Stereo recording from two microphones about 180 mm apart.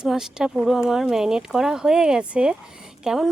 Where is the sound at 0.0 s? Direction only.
5° right (ahead or behind).